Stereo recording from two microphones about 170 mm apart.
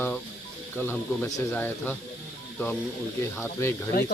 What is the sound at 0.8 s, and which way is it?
Speech, 10° left (ahead or behind).